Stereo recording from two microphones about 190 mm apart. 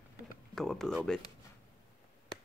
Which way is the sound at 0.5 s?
Centre (ahead or behind).